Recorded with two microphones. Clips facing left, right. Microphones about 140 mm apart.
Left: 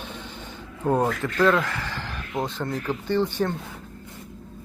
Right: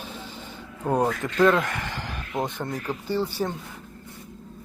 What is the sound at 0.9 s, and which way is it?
Speech, 10° right (ahead or behind).